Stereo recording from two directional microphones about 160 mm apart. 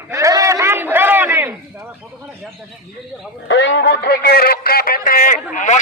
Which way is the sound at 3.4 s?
90° left.